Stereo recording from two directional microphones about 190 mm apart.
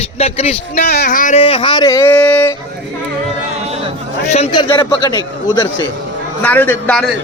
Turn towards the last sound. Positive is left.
turn(degrees=5)  # may be behind; listen again after turning